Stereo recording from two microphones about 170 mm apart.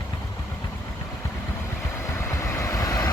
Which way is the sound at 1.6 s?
15° left (ahead or behind).